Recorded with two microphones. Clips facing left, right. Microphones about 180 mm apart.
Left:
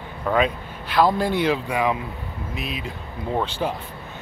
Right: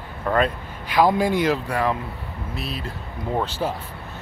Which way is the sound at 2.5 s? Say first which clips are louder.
Even; 35° right (ahead or behind).